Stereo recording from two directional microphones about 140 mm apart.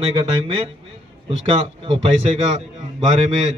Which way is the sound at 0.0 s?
40° right (ahead or behind).